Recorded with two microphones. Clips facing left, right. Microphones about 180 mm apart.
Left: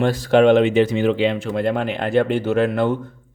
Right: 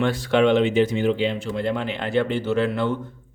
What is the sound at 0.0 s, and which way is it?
Speech, 45° left (ahead or behind).